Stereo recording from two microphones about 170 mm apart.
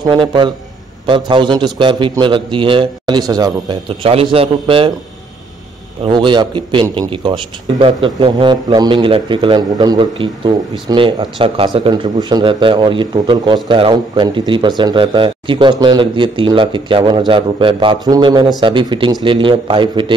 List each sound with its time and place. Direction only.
0.0 s a man's voice: 25° right (ahead or behind)
6.0 s a man's voice: 25° right (ahead or behind)